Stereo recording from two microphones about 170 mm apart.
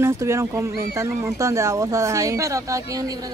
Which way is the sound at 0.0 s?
15° right (ahead or behind).